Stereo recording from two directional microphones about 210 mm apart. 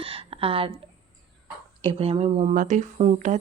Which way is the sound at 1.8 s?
25° right (ahead or behind).